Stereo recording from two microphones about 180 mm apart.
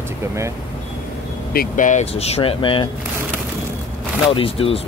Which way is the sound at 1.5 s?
50° left (ahead or behind).